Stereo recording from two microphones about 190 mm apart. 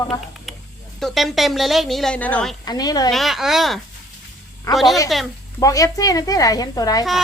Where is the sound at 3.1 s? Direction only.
Centre (ahead or behind).